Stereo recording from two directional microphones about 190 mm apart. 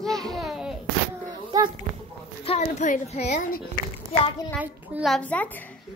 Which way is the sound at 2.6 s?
40° left (ahead or behind).